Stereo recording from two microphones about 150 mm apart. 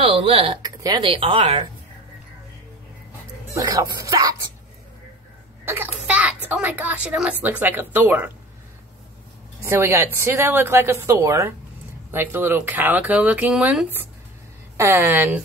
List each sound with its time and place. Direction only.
0.0 s speech: 35° right (ahead or behind)
0.6 s speech: 25° right (ahead or behind)
1.0 s speech: 35° right (ahead or behind)
3.5 s speech: 20° right (ahead or behind)
5.7 s speech: 10° right (ahead or behind)
9.7 s speech: 15° right (ahead or behind)
14.8 s speech: 20° right (ahead or behind)